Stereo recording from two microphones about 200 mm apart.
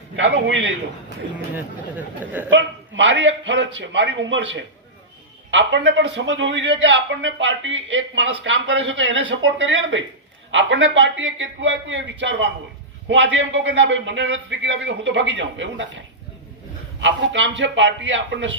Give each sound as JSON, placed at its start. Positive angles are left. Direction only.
{"t": 0.2, "sound": "a man's voice", "side_deg": -65}
{"t": 1.5, "sound": "speech", "side_deg": -10}
{"t": 2.5, "sound": "a man's voice", "side_deg": -65}
{"t": 17.0, "sound": "a man's voice", "side_deg": -65}